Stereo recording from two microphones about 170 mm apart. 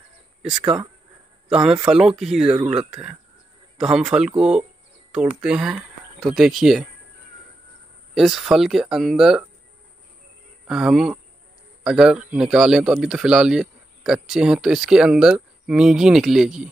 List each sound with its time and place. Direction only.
0.4 s a man's voice: 5° right (ahead or behind)
8.1 s a man's voice: centre (ahead or behind)
10.7 s a man's voice: 5° right (ahead or behind)